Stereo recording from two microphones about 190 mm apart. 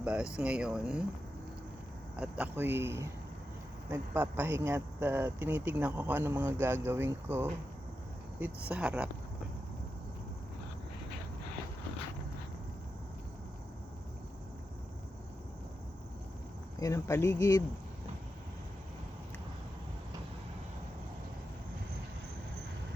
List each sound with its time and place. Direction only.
0.0 s speech: 5° right (ahead or behind)
2.1 s speech: 5° right (ahead or behind)
16.8 s speech: 15° left (ahead or behind)